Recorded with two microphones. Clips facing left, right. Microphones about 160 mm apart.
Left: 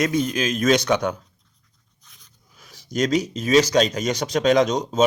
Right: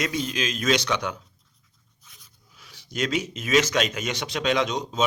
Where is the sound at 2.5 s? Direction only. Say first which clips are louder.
Left 7 dB; 45° left (ahead or behind).